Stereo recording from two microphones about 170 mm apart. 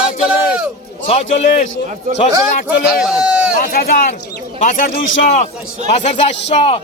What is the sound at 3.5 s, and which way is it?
Speech, 55° left (ahead or behind).